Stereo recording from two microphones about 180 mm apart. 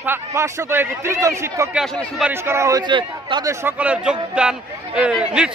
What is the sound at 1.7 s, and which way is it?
Speech, centre (ahead or behind).